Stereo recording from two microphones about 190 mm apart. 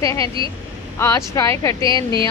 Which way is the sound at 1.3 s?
15° left (ahead or behind).